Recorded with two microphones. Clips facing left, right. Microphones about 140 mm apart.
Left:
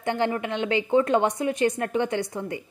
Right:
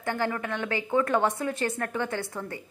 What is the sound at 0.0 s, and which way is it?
A woman's voice, 20° left (ahead or behind).